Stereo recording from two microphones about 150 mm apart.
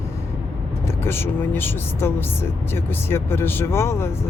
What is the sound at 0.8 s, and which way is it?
Speech, 15° left (ahead or behind).